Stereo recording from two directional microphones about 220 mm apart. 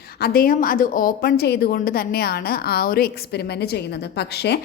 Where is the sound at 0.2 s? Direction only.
40° left (ahead or behind).